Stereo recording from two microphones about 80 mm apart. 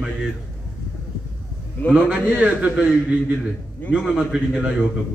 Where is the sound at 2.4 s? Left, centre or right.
Centre.